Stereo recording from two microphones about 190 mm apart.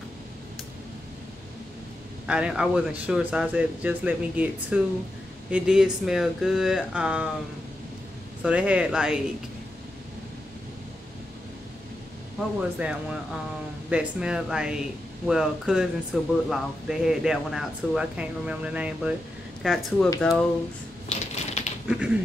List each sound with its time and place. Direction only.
2.2 s speech: 5° right (ahead or behind)
8.5 s speech: 5° right (ahead or behind)
12.4 s speech: 5° right (ahead or behind)
21.1 s typewriter: 35° left (ahead or behind)
21.8 s speech: 5° right (ahead or behind)